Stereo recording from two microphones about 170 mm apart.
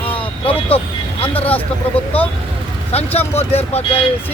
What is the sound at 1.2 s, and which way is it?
Speech, 35° left (ahead or behind).